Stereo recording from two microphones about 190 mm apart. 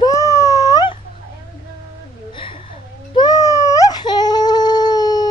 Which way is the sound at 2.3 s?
25° left (ahead or behind).